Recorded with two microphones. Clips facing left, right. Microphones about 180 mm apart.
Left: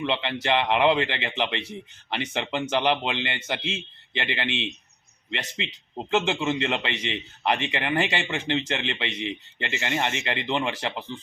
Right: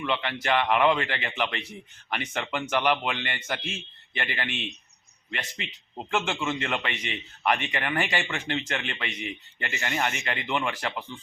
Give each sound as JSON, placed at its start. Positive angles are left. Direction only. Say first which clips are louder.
{"t": 0.0, "sound": "a man's voice", "louder": "left 2 dB", "side_deg": 25}